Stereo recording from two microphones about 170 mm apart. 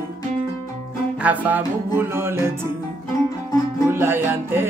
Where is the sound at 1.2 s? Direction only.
10° right (ahead or behind).